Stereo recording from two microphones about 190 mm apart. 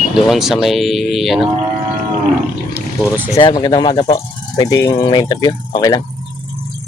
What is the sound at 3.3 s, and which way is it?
Speech, 25° left (ahead or behind).